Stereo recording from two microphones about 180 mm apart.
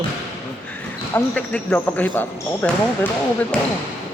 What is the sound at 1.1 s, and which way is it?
Speech, 10° left (ahead or behind).